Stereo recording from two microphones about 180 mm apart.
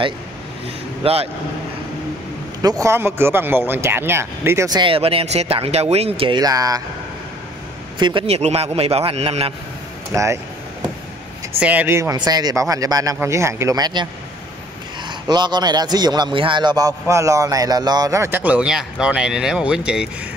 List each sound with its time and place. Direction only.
1.0 s a man's voice: 35° right (ahead or behind)
2.6 s a man's voice: 20° right (ahead or behind)
8.0 s a man's voice: 25° right (ahead or behind)
10.1 s speech: 15° right (ahead or behind)
11.6 s a man's voice: 10° right (ahead or behind)
15.0 s a man's voice: 25° right (ahead or behind); by 20.1 s 5° right (ahead or behind)